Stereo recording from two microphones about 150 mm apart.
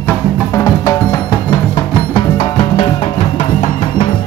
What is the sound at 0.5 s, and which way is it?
Music, 20° left (ahead or behind).